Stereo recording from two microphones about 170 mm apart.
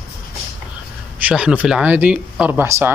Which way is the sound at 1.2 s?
5° right (ahead or behind).